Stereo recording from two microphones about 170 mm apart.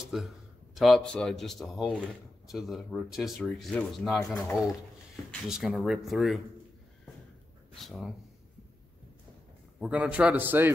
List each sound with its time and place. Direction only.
0.1 s speech: 5° right (ahead or behind)
5.3 s speech: centre (ahead or behind)
7.7 s speech: centre (ahead or behind)
9.8 s a man's voice: 5° right (ahead or behind)